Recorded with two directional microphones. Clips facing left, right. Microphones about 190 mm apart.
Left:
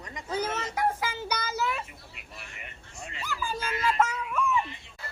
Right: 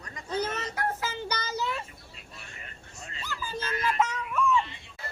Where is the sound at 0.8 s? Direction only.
10° left (ahead or behind).